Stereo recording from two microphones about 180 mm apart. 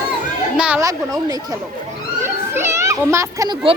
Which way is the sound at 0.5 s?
5° right (ahead or behind).